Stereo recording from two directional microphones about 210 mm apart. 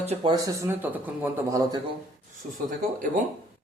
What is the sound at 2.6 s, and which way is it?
Speech, 40° right (ahead or behind).